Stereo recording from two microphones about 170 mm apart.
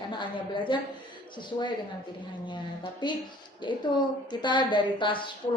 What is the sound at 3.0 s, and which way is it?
A woman's voice, 25° left (ahead or behind).